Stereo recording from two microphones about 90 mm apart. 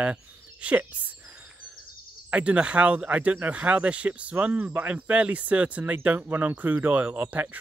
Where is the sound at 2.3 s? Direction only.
15° right (ahead or behind).